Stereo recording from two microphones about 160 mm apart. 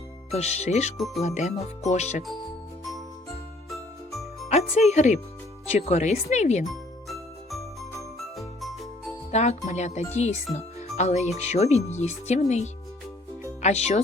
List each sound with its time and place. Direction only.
0.3 s speech: 45° left (ahead or behind)
0.9 s speech: centre (ahead or behind)
1.2 s speech: 45° left (ahead or behind)
3.7 s jingle: centre (ahead or behind)
4.4 s speech: 45° left (ahead or behind)
6.7 s jingle: centre (ahead or behind)
9.3 s speech: 45° left (ahead or behind)